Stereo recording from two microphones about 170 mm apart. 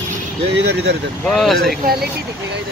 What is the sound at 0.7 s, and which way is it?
Speech, 80° right.